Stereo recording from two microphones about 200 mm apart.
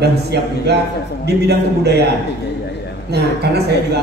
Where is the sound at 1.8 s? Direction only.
55° right (ahead or behind).